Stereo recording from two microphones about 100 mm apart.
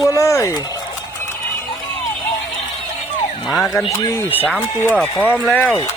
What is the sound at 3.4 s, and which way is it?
Speech, centre (ahead or behind).